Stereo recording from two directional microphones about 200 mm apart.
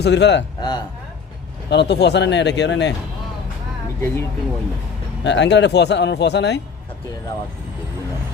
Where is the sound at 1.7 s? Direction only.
60° left (ahead or behind).